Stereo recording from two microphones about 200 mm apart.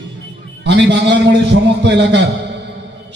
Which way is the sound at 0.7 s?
60° right (ahead or behind).